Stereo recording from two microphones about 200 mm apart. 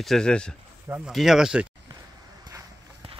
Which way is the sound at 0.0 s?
5° left (ahead or behind).